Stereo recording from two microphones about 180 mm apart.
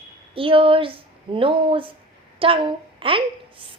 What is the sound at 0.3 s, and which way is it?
A child's voice, 30° right (ahead or behind).